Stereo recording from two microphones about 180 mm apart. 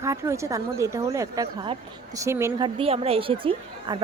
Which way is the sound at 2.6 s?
30° right (ahead or behind).